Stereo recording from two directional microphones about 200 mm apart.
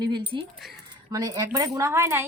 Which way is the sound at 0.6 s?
Centre (ahead or behind).